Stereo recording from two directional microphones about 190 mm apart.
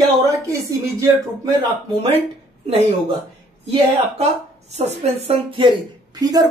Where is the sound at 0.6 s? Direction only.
15° right (ahead or behind).